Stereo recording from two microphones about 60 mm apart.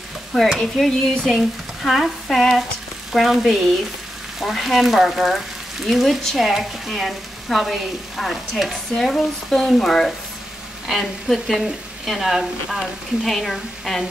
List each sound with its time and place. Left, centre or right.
0.6 s speech: centre